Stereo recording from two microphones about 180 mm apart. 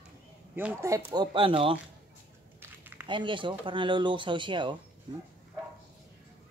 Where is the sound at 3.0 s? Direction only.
25° right (ahead or behind).